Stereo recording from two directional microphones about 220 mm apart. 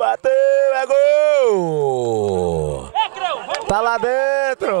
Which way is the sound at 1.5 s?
35° right (ahead or behind).